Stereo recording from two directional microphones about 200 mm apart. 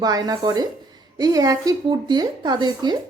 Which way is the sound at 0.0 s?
20° right (ahead or behind).